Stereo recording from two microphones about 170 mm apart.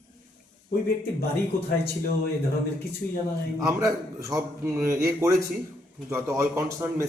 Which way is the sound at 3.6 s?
20° right (ahead or behind).